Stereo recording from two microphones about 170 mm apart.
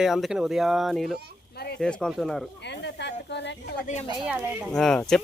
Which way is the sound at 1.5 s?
70° left (ahead or behind).